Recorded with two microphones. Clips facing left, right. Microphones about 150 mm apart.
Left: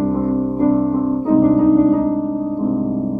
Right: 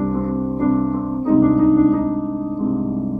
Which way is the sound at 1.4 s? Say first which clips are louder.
Left 1 dB; 25° left (ahead or behind).